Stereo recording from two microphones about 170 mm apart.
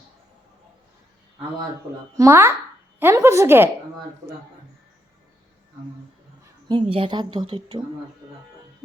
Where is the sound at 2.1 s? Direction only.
15° right (ahead or behind).